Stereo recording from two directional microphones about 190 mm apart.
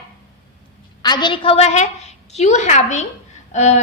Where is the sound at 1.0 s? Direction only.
25° left (ahead or behind).